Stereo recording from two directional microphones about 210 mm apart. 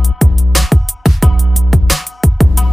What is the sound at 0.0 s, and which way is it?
Music, centre (ahead or behind).